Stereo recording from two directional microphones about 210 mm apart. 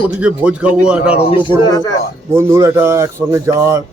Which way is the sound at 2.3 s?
15° right (ahead or behind).